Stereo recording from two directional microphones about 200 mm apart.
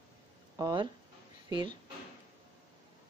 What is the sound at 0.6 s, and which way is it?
Speech, 20° right (ahead or behind).